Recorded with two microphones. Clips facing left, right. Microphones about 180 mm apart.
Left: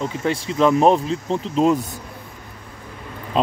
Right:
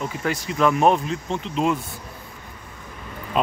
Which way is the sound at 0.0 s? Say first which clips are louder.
Left 3 dB; 30° left (ahead or behind).